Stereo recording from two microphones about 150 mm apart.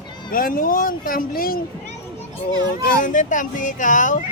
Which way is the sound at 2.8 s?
60° left (ahead or behind).